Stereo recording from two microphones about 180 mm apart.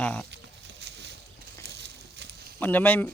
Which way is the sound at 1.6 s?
70° right (ahead or behind).